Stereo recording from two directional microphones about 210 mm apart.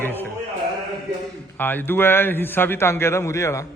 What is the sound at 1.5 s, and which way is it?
A man's voice, 10° left (ahead or behind).